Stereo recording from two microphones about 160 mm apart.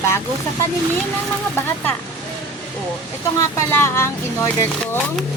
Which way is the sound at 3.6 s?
15° left (ahead or behind).